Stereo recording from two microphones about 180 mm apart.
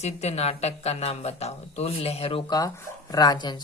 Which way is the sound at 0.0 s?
35° left (ahead or behind).